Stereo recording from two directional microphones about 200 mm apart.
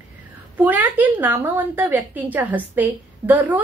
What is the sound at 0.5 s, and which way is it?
A woman's voice, 10° right (ahead or behind).